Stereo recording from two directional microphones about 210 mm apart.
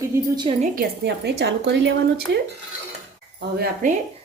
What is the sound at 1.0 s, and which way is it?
Speech, 55° right (ahead or behind).